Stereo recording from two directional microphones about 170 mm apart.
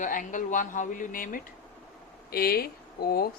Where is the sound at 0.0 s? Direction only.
50° left (ahead or behind).